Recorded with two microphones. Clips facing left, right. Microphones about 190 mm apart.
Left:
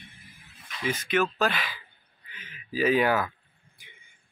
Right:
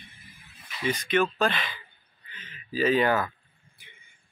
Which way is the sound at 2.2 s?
10° left (ahead or behind).